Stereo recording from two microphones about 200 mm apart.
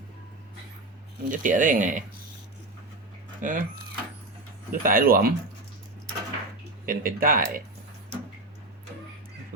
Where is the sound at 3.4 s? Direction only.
40° right (ahead or behind).